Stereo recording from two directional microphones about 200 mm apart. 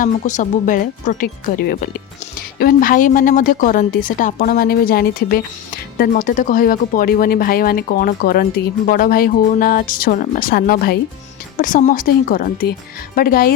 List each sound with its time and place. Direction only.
0.0 s a woman's voice: 40° left (ahead or behind)